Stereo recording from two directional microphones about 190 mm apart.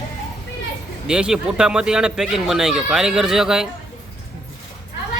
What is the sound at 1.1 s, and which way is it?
Speech, 5° right (ahead or behind).